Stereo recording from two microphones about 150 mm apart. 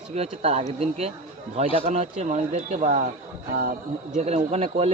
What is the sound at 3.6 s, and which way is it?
Speech, 70° right (ahead or behind).